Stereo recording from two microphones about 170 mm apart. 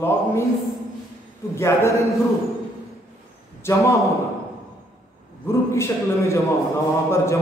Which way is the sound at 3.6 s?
20° left (ahead or behind).